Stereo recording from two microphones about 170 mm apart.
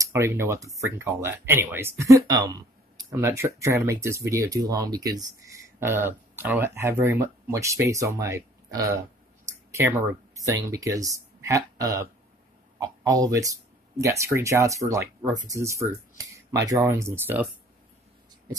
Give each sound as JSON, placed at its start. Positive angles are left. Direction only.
{"t": 0.0, "sound": "speech", "side_deg": -15}